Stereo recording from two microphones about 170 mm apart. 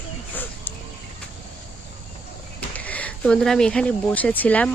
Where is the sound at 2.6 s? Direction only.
10° left (ahead or behind).